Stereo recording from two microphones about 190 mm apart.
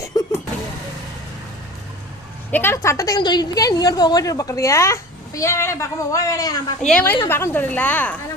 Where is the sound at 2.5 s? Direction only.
10° left (ahead or behind).